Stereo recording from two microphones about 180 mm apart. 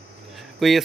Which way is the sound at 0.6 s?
Centre (ahead or behind).